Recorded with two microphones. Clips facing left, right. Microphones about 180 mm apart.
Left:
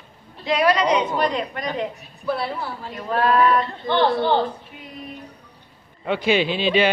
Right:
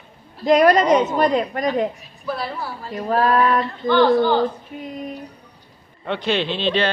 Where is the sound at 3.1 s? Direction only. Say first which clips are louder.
Right 1 dB; 40° right (ahead or behind).